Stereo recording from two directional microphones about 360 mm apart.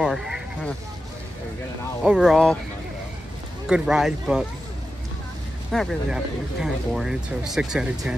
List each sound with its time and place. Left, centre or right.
0.0 s a sound: centre
2.0 s speech: centre
3.6 s speech: centre
5.7 s speech: centre